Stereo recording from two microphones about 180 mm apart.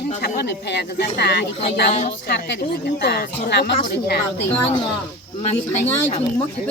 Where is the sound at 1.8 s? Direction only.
40° left (ahead or behind).